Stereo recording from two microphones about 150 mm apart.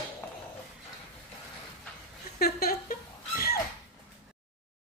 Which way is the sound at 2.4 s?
85° left.